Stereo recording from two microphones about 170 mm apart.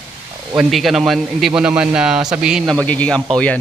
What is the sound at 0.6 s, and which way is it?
A man's voice, centre (ahead or behind).